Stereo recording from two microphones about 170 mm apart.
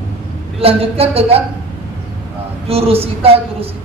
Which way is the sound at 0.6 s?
35° right (ahead or behind).